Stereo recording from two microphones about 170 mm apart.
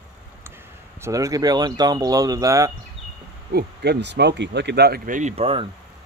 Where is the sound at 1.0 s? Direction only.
20° right (ahead or behind).